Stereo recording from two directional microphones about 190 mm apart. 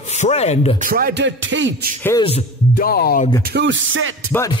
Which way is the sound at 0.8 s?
50° right (ahead or behind).